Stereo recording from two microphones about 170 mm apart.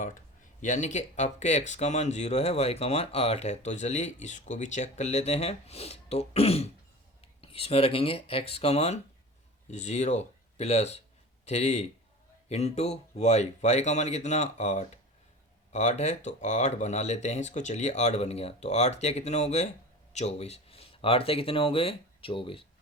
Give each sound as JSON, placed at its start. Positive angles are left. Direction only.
{"t": 0.6, "sound": "speech", "side_deg": 45}